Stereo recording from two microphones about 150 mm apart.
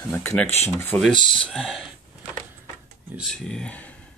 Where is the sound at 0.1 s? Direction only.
15° left (ahead or behind).